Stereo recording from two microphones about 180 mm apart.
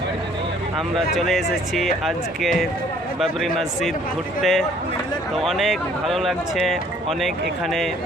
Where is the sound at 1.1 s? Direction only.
Centre (ahead or behind).